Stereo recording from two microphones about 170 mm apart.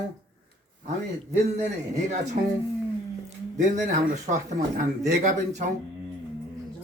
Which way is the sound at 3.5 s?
45° right (ahead or behind).